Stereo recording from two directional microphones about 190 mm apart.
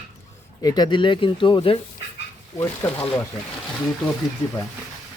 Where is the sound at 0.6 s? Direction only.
20° left (ahead or behind).